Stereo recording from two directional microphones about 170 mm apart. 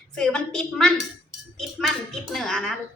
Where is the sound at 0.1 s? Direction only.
5° left (ahead or behind).